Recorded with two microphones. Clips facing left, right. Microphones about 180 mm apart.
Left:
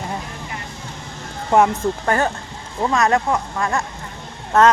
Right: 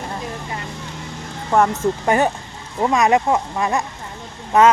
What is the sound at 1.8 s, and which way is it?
Speech, 15° right (ahead or behind).